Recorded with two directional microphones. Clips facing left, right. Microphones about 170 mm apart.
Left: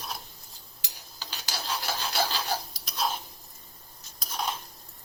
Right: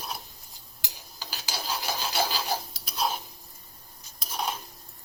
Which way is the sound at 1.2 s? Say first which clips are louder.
Right 1 dB; 10° right (ahead or behind).